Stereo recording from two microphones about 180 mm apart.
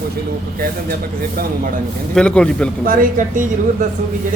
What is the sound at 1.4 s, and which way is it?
Speech, 55° right (ahead or behind).